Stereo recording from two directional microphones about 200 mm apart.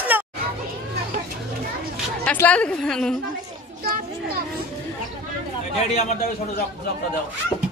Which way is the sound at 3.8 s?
50° right (ahead or behind).